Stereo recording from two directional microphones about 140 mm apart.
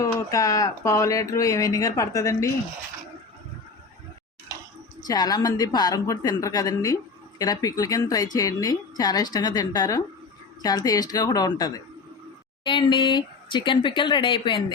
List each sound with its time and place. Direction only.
0.0 s a woman's voice: 25° left (ahead or behind)
5.0 s a woman's voice: 30° left (ahead or behind)